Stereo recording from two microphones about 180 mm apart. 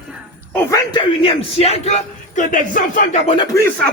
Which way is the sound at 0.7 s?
30° left (ahead or behind).